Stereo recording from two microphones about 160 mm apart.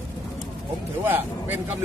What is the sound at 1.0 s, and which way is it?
Speech, 10° right (ahead or behind).